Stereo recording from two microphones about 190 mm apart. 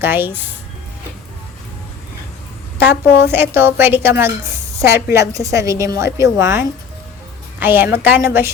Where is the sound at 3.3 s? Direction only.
10° right (ahead or behind).